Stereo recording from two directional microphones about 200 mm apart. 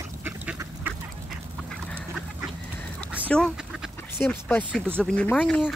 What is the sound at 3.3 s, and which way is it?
Duck, 5° left (ahead or behind).